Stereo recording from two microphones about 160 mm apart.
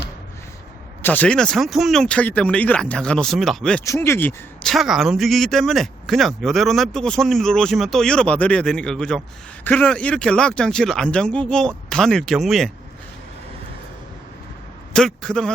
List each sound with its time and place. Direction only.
1.0 s speech: 10° left (ahead or behind)
3.8 s speech: 15° left (ahead or behind)
4.6 s speech: centre (ahead or behind)
14.9 s speech: 5° left (ahead or behind)